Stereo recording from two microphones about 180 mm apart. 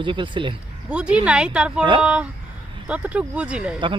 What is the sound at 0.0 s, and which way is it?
Speech, 25° right (ahead or behind).